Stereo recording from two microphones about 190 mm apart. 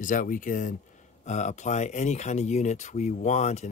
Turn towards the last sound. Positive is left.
turn(degrees=35)  # may be behind; listen again after turning